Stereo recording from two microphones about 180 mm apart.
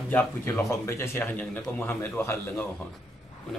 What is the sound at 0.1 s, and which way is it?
Speech, 10° left (ahead or behind).